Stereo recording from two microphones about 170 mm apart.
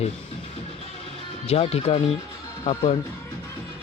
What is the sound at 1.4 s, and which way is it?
Speech, 35° left (ahead or behind).